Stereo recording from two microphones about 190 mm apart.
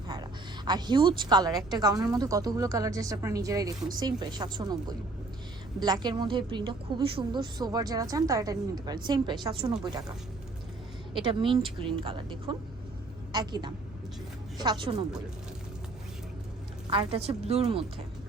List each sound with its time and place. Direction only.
0.1 s a woman's voice: 20° right (ahead or behind)
11.1 s a woman's voice: 25° right (ahead or behind)
16.9 s a woman's voice: 30° right (ahead or behind)